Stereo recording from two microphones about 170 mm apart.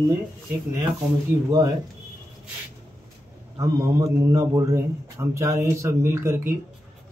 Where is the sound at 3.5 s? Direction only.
20° right (ahead or behind).